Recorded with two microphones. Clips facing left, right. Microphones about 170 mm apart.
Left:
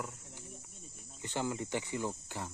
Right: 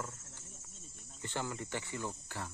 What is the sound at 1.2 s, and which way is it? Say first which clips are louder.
Speech: left 4 dB; 15° left (ahead or behind).